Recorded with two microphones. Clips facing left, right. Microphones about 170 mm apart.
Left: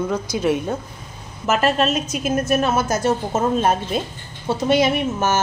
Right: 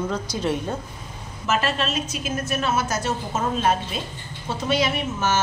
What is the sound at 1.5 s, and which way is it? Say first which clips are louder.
A woman's voice: left 6 dB; 45° left (ahead or behind).